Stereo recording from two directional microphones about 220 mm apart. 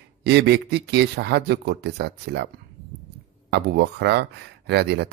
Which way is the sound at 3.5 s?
50° right (ahead or behind).